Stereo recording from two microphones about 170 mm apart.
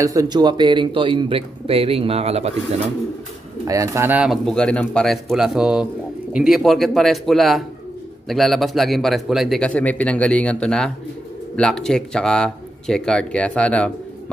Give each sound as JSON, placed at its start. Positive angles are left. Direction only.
{"t": 0.0, "sound": "speech", "side_deg": -20}
{"t": 3.6, "sound": "speech", "side_deg": -20}